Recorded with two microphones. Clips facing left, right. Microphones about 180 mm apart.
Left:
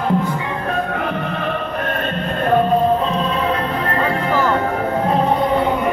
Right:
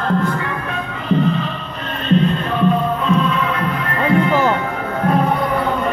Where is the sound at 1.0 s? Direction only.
60° left (ahead or behind).